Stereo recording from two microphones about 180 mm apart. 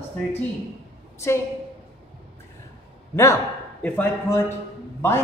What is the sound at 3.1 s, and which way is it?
Speech, 15° left (ahead or behind).